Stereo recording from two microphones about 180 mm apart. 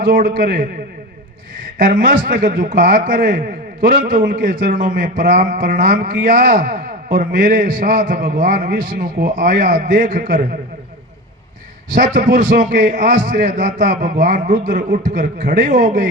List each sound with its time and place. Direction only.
0.0 s speech: 50° right (ahead or behind)
11.9 s speech: 45° right (ahead or behind)